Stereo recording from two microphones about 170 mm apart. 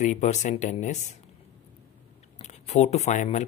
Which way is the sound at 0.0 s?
45° left (ahead or behind).